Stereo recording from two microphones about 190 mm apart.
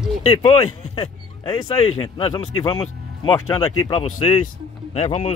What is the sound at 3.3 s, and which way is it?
A man's voice, 15° left (ahead or behind).